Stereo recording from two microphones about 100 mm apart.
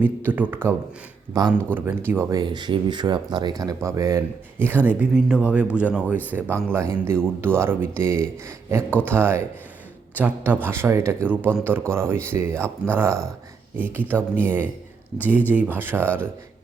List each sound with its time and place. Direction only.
0.0 s speech: 20° right (ahead or behind)
1.3 s speech: 40° right (ahead or behind)
1.7 s speech: 20° right (ahead or behind)
2.3 s speech: 45° right (ahead or behind)
4.6 s speech: 20° right (ahead or behind)
6.7 s speech: 25° right (ahead or behind)